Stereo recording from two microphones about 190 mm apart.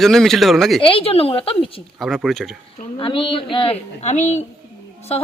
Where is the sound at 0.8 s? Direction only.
30° left (ahead or behind).